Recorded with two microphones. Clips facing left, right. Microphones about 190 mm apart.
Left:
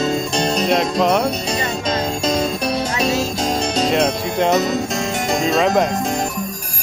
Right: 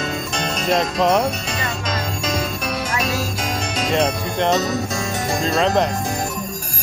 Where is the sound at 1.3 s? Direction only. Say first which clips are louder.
Left 4 dB; 35° left (ahead or behind).